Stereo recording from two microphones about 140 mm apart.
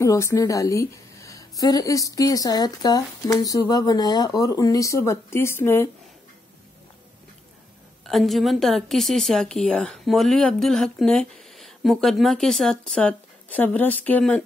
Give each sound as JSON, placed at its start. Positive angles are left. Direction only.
{"t": 0.0, "sound": "a woman's voice", "side_deg": 25}
{"t": 8.1, "sound": "a woman's voice", "side_deg": 0}